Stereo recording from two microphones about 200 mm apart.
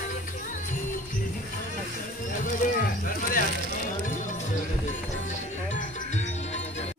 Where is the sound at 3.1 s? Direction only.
45° left (ahead or behind).